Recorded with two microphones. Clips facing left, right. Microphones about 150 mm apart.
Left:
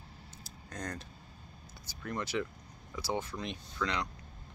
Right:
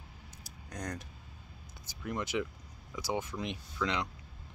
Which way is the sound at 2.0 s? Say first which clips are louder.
Right 1 dB; 20° right (ahead or behind).